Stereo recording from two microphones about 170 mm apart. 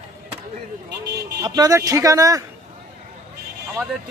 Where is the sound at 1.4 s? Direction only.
25° right (ahead or behind).